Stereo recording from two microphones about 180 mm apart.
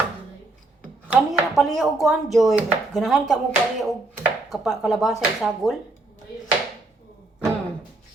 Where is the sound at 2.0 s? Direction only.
Centre (ahead or behind).